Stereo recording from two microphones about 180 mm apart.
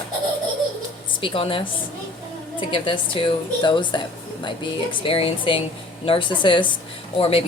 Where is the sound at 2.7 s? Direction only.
30° left (ahead or behind).